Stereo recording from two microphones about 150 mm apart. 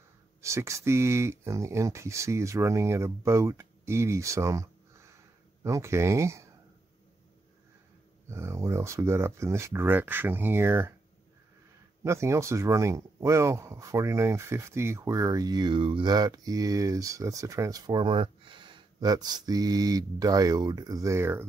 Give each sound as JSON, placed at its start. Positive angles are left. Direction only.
{"t": 0.4, "sound": "speech", "side_deg": -20}
{"t": 8.3, "sound": "speech", "side_deg": -20}
{"t": 12.0, "sound": "speech", "side_deg": -20}